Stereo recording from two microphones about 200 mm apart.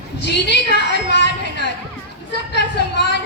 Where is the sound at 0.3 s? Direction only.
60° left (ahead or behind).